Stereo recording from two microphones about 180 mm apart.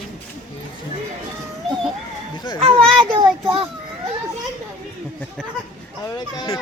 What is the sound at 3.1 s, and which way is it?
Child singing, 25° right (ahead or behind).